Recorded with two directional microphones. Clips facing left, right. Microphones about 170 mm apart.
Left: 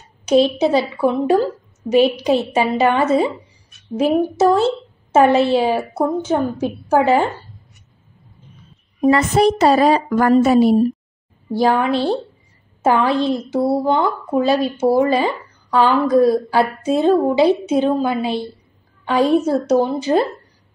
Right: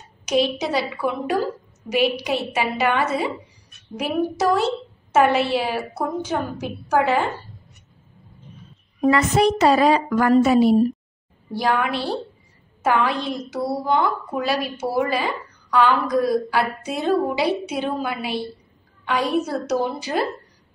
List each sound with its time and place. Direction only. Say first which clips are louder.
0.2 s a woman's voice: left 7 dB; 30° left (ahead or behind)
9.1 s speech: left 3 dB; 35° left (ahead or behind)
11.5 s a woman's voice: left 6 dB; 30° left (ahead or behind)